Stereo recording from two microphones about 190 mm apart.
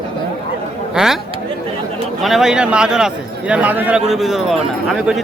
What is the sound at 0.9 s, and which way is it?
Speech, centre (ahead or behind).